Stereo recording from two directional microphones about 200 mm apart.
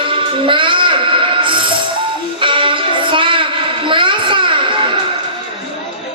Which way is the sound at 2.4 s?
25° right (ahead or behind).